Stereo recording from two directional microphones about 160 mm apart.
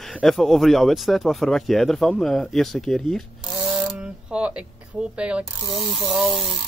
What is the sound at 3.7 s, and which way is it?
Mechanisms, 5° right (ahead or behind).